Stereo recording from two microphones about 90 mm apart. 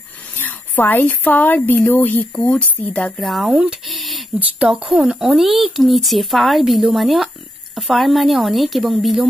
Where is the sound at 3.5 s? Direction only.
5° right (ahead or behind).